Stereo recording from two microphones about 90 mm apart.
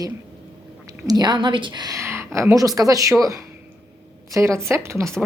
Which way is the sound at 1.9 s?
30° right (ahead or behind).